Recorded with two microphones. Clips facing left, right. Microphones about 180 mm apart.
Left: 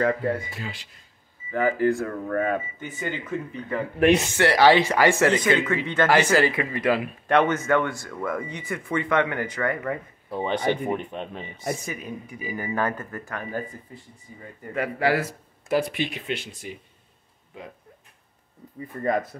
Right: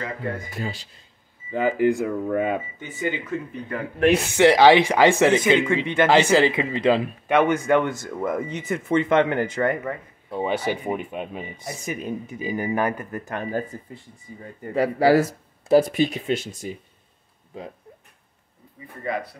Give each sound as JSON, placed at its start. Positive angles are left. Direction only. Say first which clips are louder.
{"t": 0.6, "sound": "speech", "louder": "right 5 dB", "side_deg": -35}
{"t": 1.5, "sound": "speech", "louder": "right 2 dB", "side_deg": -20}
{"t": 4.0, "sound": "speech", "louder": "even", "side_deg": 0}
{"t": 4.4, "sound": "speech", "louder": "right 6 dB", "side_deg": -20}
{"t": 7.2, "sound": "speech", "louder": "right 2 dB", "side_deg": -10}
{"t": 9.8, "sound": "speech", "louder": "left 1 dB", "side_deg": -5}
{"t": 11.8, "sound": "speech", "louder": "right 5 dB", "side_deg": -25}
{"t": 14.6, "sound": "speech", "louder": "right 5 dB", "side_deg": -35}
{"t": 19.0, "sound": "speech", "louder": "left 4 dB", "side_deg": 45}